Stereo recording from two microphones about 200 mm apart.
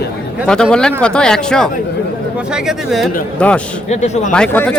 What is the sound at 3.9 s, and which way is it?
Speech, 35° left (ahead or behind).